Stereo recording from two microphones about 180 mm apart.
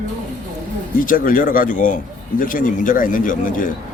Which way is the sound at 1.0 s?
50° left (ahead or behind).